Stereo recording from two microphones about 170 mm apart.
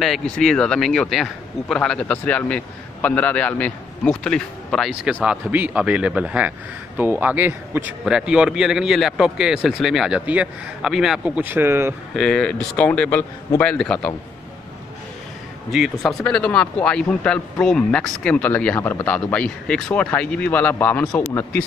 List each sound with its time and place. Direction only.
0.0 s a man's voice: centre (ahead or behind); by 11.9 s 15° right (ahead or behind)
12.2 s speech: 5° left (ahead or behind)
15.7 s speech: centre (ahead or behind)